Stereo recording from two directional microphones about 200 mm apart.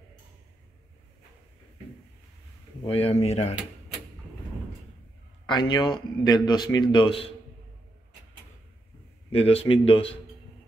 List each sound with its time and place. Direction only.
2.8 s speech: 30° left (ahead or behind)
5.5 s a man's voice: 20° left (ahead or behind)
9.3 s a man's voice: 30° left (ahead or behind)